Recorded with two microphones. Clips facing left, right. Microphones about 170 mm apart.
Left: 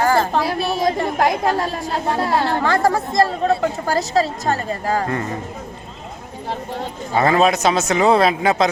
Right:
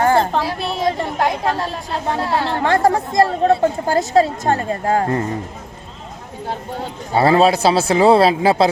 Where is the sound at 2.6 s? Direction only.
25° right (ahead or behind).